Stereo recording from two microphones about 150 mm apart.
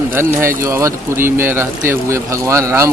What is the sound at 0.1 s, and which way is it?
Speech, 15° right (ahead or behind).